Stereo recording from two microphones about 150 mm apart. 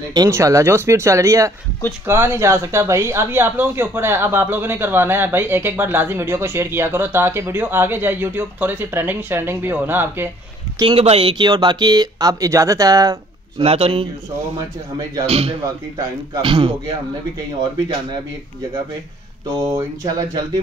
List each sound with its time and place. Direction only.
0.1 s speech: 20° right (ahead or behind)
10.8 s speech: 35° right (ahead or behind)
13.6 s a man's voice: 40° right (ahead or behind)
15.2 s a man's voice: 40° right (ahead or behind)
19.4 s speech: 20° right (ahead or behind)